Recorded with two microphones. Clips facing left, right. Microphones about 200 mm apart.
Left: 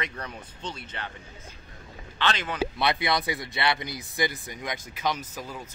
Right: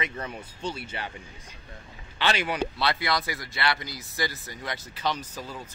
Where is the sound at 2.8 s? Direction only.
20° left (ahead or behind).